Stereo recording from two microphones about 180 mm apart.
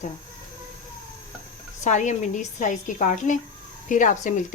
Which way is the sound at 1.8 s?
40° left (ahead or behind).